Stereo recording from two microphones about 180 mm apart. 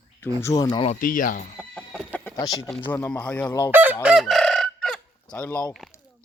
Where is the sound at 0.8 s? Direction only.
45° left (ahead or behind).